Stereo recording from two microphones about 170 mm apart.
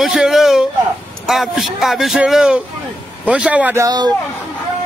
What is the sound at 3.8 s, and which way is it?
Speech, 25° right (ahead or behind).